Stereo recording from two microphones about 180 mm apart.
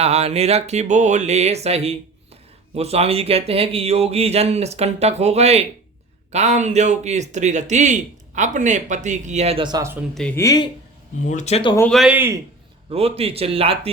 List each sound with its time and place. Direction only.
0.0 s speech: 35° right (ahead or behind); by 10.0 s 20° right (ahead or behind)
10.2 s speech: 5° left (ahead or behind)
10.4 s speech: 20° left (ahead or behind)
11.3 s speech: 40° left (ahead or behind)
11.9 s speech: 5° right (ahead or behind)
12.9 s speech: 35° right (ahead or behind)